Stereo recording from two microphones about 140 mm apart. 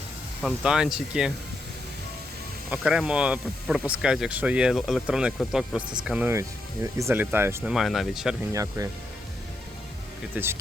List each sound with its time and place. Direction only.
0.4 s speech: 5° right (ahead or behind)
2.6 s speech: 5° right (ahead or behind)
7.6 s speech: 5° right (ahead or behind)
8.5 s speech: 25° right (ahead or behind)
10.3 s speech: 15° right (ahead or behind)